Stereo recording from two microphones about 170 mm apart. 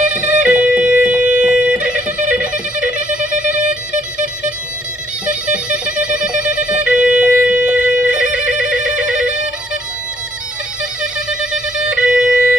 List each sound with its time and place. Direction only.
0.1 s music: 5° right (ahead or behind)
2.5 s music: 50° right (ahead or behind)
5.2 s music: 5° right (ahead or behind)
11.0 s music: 5° right (ahead or behind)